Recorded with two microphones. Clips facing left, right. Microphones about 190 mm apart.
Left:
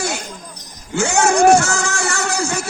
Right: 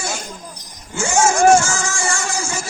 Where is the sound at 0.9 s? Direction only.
65° left (ahead or behind).